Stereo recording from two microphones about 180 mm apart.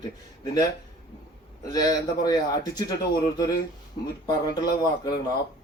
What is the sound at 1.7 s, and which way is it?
Speech, 20° left (ahead or behind).